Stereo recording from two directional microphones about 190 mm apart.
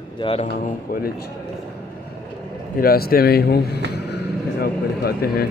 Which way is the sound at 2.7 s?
55° left (ahead or behind).